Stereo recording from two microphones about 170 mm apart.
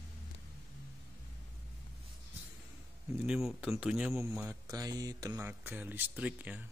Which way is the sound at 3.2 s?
5° right (ahead or behind).